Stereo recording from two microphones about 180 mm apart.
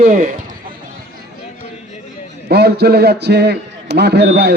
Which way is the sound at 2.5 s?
65° right (ahead or behind).